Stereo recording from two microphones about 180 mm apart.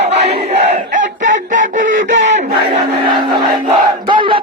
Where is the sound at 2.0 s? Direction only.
90° right.